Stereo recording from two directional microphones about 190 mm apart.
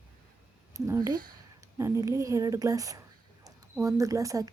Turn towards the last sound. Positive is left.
turn(degrees=-15)  # may be behind; listen again after turning